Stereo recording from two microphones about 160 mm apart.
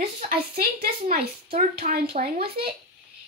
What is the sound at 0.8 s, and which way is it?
A child's voice, 70° right (ahead or behind).